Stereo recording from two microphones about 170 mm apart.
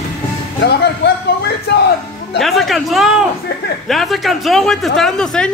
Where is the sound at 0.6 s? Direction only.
75° left (ahead or behind).